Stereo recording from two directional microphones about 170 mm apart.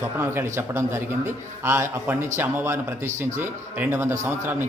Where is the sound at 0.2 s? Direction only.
15° right (ahead or behind).